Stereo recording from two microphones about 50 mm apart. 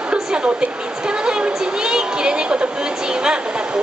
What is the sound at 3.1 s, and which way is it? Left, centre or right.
Speech, centre.